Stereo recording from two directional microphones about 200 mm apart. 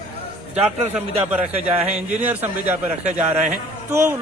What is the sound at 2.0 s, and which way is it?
Speech, 10° right (ahead or behind).